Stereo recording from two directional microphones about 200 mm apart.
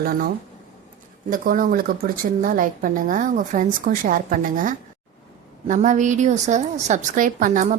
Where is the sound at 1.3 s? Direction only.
45° right (ahead or behind).